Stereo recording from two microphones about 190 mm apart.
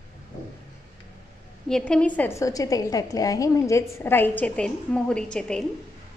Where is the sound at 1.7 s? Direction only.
5° left (ahead or behind).